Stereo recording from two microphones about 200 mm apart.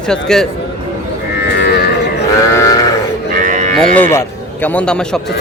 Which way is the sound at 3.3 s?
40° right (ahead or behind).